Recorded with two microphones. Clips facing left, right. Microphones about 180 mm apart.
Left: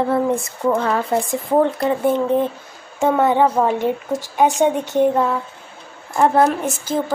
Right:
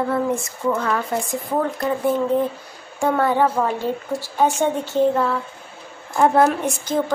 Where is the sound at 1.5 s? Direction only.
25° left (ahead or behind).